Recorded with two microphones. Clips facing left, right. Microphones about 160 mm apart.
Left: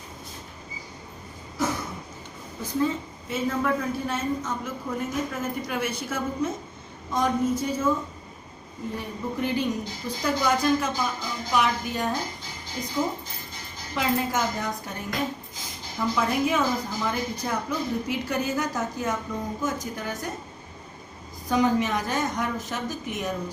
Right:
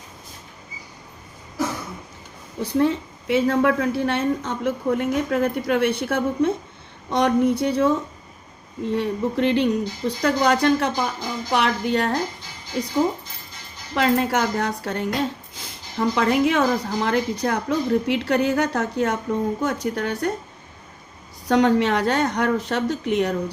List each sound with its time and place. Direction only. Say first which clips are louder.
2.6 s a woman's voice: right 6 dB; 70° right (ahead or behind)
9.0 s a woman's voice: right 8 dB; 70° right (ahead or behind)
13.9 s a woman's voice: right 6 dB; 65° right (ahead or behind)
21.4 s a woman's voice: right 5 dB; 70° right (ahead or behind)